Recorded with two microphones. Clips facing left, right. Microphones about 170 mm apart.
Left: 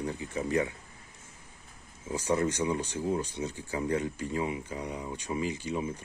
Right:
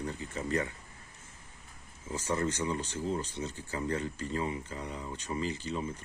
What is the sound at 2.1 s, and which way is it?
Speech, 15° left (ahead or behind).